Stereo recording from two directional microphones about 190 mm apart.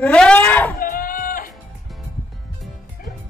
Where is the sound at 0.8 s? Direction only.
45° left (ahead or behind).